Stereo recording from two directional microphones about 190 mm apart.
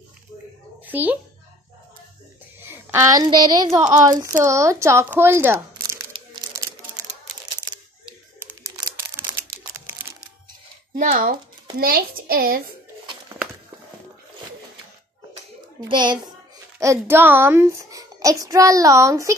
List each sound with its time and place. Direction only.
0.8 s a child's voice: 10° right (ahead or behind)
2.6 s a woman's voice: 10° right (ahead or behind)
6.5 s a sound: 15° right (ahead or behind)
8.7 s crumpling: 15° right (ahead or behind)
11.0 s a child's voice: 45° right (ahead or behind)
15.8 s a child's voice: 25° right (ahead or behind)